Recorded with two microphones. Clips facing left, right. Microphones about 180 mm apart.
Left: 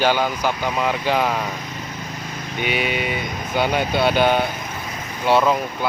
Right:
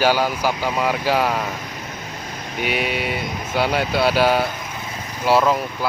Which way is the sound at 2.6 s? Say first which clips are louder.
Even; centre (ahead or behind).